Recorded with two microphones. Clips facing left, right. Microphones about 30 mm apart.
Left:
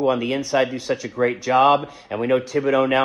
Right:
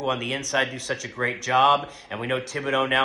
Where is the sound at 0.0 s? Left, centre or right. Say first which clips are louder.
Left 6 dB; centre.